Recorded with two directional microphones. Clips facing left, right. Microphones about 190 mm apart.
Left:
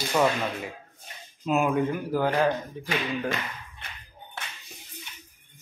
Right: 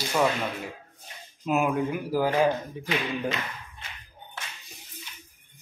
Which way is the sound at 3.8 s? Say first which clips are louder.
Even; 60° left (ahead or behind).